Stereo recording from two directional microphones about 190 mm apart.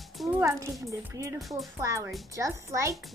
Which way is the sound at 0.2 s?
10° right (ahead or behind).